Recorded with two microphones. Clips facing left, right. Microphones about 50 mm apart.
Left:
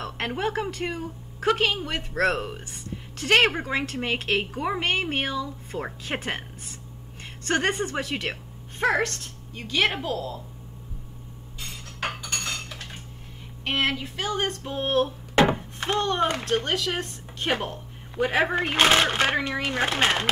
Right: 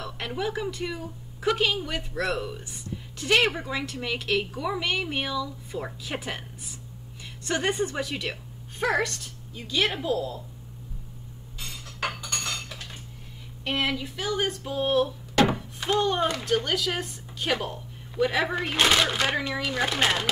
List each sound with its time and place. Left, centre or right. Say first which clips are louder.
0.4 s a woman's voice: left 1 dB; left
9.0 s a woman's voice: left 2 dB; left
11.8 s cutlery: even; left
13.9 s a woman's voice: even; left
15.3 s a sound: left 2 dB; left
15.8 s a woman's voice: even; left
17.0 s a sound: left 1 dB; left
18.1 s a woman's voice: left 2 dB; left